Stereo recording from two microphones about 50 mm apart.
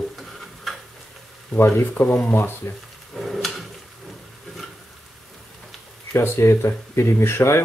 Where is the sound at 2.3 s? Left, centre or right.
Left.